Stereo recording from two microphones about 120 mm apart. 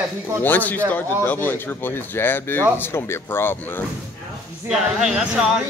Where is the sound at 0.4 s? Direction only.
15° left (ahead or behind).